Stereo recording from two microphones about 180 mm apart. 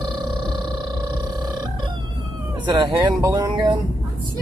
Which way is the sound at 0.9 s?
25° right (ahead or behind).